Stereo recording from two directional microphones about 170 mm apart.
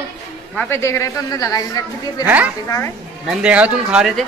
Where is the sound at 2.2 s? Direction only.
10° right (ahead or behind).